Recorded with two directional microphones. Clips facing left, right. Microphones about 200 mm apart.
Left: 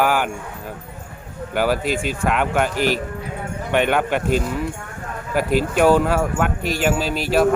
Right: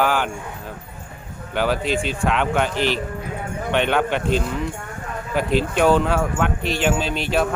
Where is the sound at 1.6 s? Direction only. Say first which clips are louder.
Left 1 dB; 10° left (ahead or behind).